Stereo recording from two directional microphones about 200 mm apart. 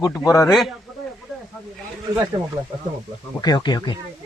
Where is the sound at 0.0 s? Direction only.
15° left (ahead or behind).